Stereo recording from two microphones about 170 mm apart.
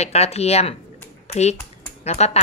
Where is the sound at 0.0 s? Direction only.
40° left (ahead or behind).